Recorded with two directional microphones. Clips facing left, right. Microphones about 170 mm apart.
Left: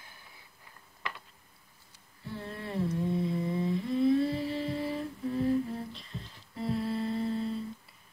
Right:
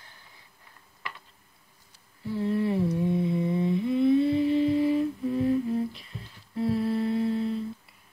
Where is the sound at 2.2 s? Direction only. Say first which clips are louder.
Right 13 dB; 5° right (ahead or behind).